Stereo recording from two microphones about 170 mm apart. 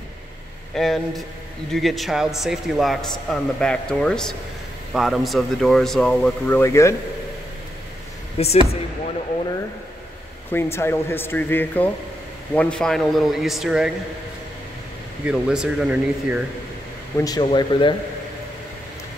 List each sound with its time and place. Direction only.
0.7 s a man's voice: centre (ahead or behind)
8.4 s speech: 35° left (ahead or behind)
10.5 s a man's voice: 15° left (ahead or behind); by 13.9 s 5° right (ahead or behind)
15.2 s a man's voice: 5° right (ahead or behind)
17.2 s speech: 25° left (ahead or behind)